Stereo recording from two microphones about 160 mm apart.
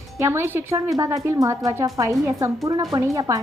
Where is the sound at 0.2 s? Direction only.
15° right (ahead or behind).